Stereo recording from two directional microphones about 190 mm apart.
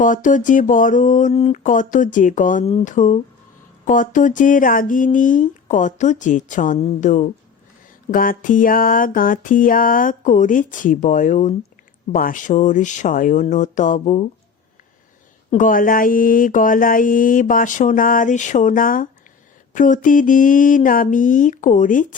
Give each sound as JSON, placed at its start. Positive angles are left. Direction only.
{"t": 0.0, "sound": "speech", "side_deg": 45}
{"t": 15.5, "sound": "speech", "side_deg": 45}